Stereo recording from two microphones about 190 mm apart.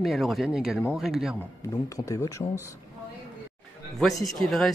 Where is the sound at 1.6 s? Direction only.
15° left (ahead or behind).